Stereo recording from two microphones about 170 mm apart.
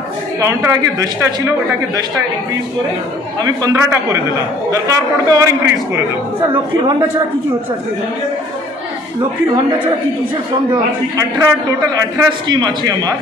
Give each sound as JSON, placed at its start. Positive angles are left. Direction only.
{"t": 0.4, "sound": "a man's voice", "side_deg": -20}
{"t": 3.4, "sound": "a man's voice", "side_deg": -20}
{"t": 10.7, "sound": "a man's voice", "side_deg": -20}